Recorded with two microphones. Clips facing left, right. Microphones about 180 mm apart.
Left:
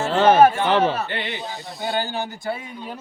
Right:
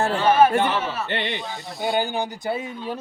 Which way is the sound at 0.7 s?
60° left (ahead or behind).